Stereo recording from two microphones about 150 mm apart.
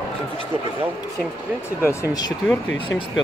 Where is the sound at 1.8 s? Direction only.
20° left (ahead or behind).